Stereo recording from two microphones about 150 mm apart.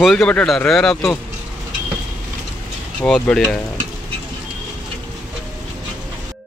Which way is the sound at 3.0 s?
5° left (ahead or behind).